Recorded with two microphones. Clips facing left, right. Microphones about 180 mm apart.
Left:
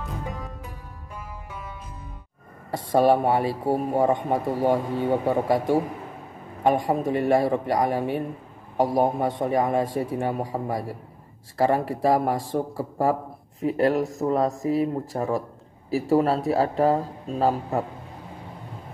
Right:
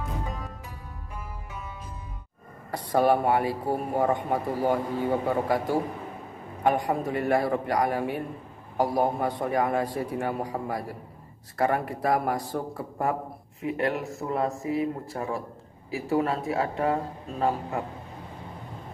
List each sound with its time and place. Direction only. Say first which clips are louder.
2.7 s a man's voice: left 3 dB; 25° left (ahead or behind)